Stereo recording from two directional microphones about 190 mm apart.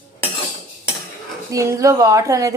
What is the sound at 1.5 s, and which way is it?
Speech, 15° right (ahead or behind).